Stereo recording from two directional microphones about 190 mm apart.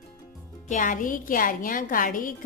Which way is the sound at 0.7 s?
45° left (ahead or behind).